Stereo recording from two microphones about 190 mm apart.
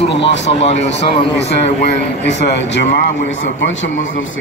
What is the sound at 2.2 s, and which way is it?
Speech, 65° left (ahead or behind).